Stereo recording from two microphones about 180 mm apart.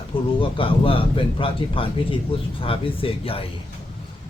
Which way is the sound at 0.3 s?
30° left (ahead or behind).